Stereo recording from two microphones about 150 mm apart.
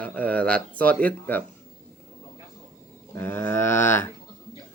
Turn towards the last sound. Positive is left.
turn(degrees=15)  # may be behind; listen again after turning